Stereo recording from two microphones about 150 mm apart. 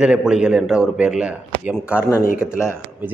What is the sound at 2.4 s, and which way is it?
Speech, 15° left (ahead or behind).